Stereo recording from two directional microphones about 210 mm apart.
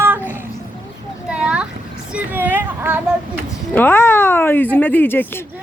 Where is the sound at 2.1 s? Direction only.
10° right (ahead or behind).